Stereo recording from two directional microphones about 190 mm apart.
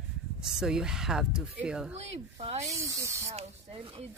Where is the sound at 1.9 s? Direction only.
35° right (ahead or behind).